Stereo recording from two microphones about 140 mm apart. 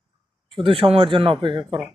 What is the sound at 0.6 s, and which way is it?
Speech, 40° right (ahead or behind).